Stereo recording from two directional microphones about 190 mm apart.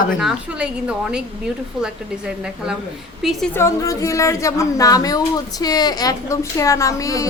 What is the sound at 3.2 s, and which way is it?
Speech, 5° right (ahead or behind).